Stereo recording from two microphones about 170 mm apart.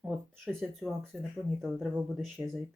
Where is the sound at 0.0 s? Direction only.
Centre (ahead or behind).